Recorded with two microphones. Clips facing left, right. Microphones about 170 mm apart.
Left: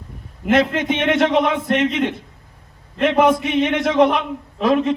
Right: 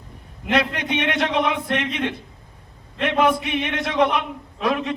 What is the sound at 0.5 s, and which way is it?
Speech, 20° left (ahead or behind).